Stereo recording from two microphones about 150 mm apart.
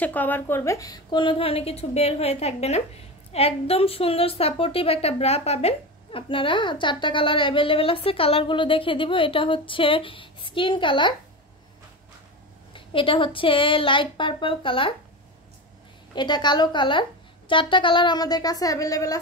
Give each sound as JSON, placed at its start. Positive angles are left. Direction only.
{"t": 0.0, "sound": "a woman's voice", "side_deg": 10}
{"t": 12.7, "sound": "a woman's voice", "side_deg": 35}
{"t": 16.2, "sound": "a woman's voice", "side_deg": 30}